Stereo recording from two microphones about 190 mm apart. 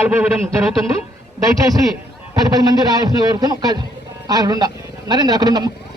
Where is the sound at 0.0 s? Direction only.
10° right (ahead or behind).